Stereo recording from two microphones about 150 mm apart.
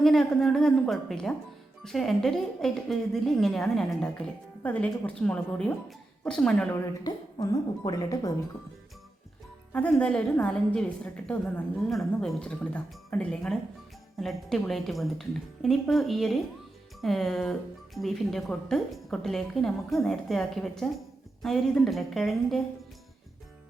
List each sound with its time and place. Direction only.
0.0 s a woman's voice: centre (ahead or behind)
7.0 s a woman's voice: 25° left (ahead or behind)
9.7 s a woman's voice: 10° left (ahead or behind)